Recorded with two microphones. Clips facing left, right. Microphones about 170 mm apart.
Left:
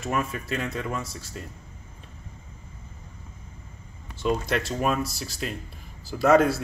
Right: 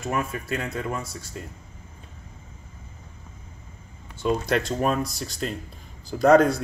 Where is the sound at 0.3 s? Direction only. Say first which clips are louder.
Right 1 dB; 25° right (ahead or behind).